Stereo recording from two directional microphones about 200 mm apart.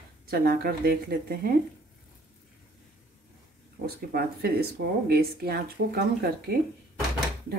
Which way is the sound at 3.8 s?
50° right (ahead or behind).